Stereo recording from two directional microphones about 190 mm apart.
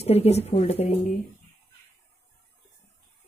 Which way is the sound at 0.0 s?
35° left (ahead or behind).